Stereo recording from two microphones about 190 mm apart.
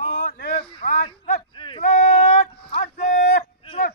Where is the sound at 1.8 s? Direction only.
45° left (ahead or behind).